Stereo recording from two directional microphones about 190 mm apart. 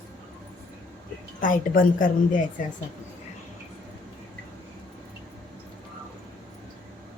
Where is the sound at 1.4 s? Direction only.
45° left (ahead or behind).